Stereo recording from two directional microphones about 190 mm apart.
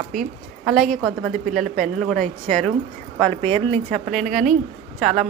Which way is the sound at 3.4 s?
30° right (ahead or behind).